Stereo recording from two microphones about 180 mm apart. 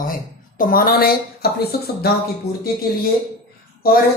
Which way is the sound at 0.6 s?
55° left (ahead or behind).